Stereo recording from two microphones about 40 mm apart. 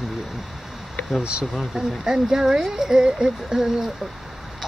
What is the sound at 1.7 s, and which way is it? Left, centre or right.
Speech, centre.